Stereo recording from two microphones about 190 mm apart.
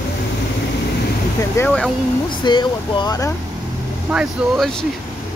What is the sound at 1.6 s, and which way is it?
Speech, 5° left (ahead or behind).